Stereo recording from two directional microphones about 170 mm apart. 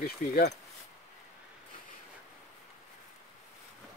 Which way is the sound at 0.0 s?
70° left (ahead or behind).